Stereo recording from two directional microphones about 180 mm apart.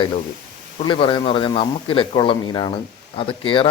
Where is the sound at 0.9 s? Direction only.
25° left (ahead or behind).